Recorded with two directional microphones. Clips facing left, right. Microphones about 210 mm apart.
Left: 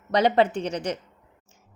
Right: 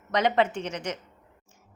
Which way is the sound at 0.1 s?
35° left (ahead or behind).